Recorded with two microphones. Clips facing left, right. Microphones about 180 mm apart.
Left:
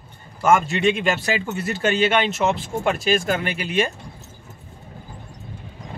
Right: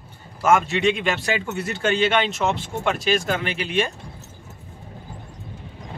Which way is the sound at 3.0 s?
50° left (ahead or behind).